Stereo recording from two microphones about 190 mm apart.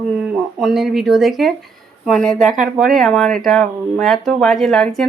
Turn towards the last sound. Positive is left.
turn(degrees=0)  # may be behind; listen again after turning